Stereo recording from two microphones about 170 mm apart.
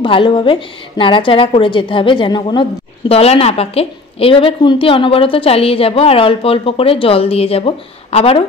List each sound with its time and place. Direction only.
0.0 s a woman's voice: 30° left (ahead or behind)